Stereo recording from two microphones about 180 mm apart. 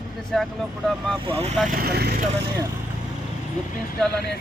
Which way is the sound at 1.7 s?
60° right (ahead or behind).